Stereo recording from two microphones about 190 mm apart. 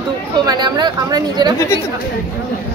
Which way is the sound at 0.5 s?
20° right (ahead or behind).